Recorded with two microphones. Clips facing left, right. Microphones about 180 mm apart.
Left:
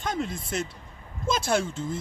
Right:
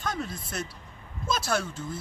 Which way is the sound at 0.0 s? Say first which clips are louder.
Left 3 dB; 25° left (ahead or behind).